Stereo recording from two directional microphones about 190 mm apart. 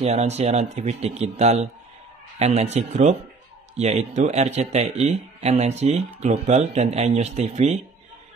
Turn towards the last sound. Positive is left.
turn(degrees=-35)  # may be behind; listen again after turning